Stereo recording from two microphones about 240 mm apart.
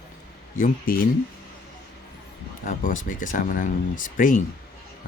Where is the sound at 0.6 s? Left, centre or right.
Left.